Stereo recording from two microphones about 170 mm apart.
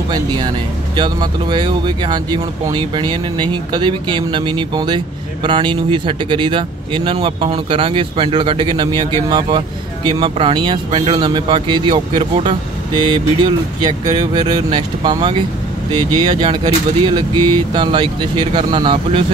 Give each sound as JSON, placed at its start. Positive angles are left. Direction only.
{"t": 0.1, "sound": "speech", "side_deg": -25}